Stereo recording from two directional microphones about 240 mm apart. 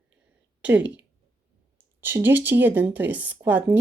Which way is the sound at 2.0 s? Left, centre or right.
Centre.